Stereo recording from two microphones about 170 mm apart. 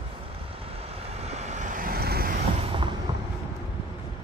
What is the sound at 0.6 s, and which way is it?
Vehicle, 35° right (ahead or behind).